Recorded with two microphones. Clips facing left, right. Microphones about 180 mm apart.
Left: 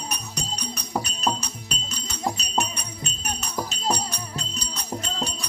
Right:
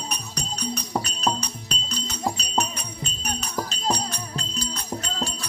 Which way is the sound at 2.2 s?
Centre (ahead or behind).